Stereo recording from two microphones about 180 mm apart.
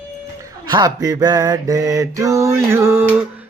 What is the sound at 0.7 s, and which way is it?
Mantra, 25° right (ahead or behind).